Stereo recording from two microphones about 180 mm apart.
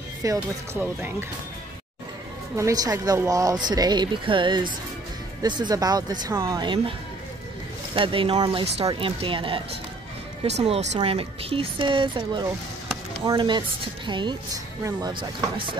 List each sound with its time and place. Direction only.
0.2 s speech: 15° right (ahead or behind)
2.5 s a woman's voice: 20° right (ahead or behind)
7.9 s a woman's voice: 30° right (ahead or behind)